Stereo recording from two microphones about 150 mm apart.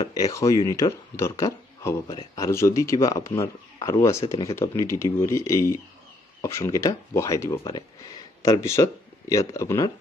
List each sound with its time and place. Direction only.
0.0 s speech: 25° left (ahead or behind)